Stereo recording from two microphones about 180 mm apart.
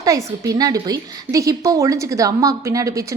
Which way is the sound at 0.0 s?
20° right (ahead or behind).